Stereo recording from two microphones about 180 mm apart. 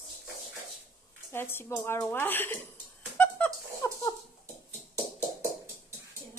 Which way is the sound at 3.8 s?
20° left (ahead or behind).